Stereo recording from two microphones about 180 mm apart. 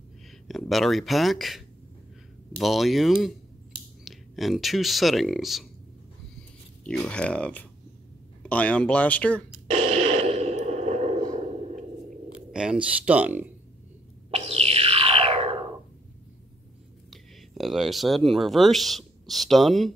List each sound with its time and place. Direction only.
0.5 s speech: centre (ahead or behind)
6.9 s speech: 5° left (ahead or behind)
9.7 s a sound: 35° right (ahead or behind)
12.5 s speech: 5° right (ahead or behind)
14.3 s a sound: 35° right (ahead or behind)
17.1 s speech: centre (ahead or behind)